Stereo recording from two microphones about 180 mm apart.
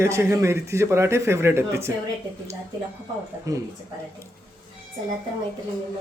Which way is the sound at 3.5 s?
20° right (ahead or behind).